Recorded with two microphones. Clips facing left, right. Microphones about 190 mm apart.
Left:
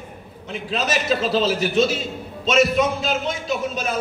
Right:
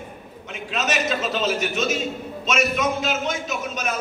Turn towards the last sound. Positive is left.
turn(degrees=30)  # may be behind; listen again after turning